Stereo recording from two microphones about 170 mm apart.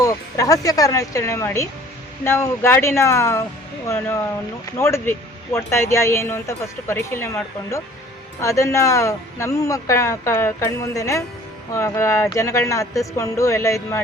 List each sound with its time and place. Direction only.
0.0 s speech: 20° left (ahead or behind)